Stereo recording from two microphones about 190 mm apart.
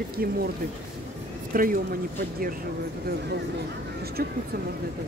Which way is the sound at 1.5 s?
50° right (ahead or behind).